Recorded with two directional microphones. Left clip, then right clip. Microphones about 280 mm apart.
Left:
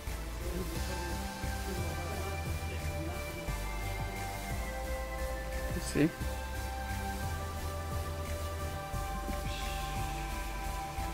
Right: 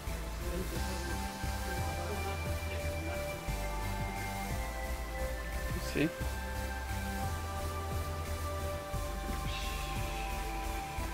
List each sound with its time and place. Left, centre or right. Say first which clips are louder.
6.0 s speech: left 3 dB; centre